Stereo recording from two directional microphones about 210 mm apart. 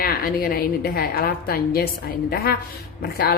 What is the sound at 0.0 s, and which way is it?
A woman's voice, 45° left (ahead or behind).